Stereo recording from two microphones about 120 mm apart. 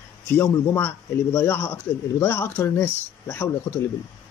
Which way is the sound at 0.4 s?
20° left (ahead or behind).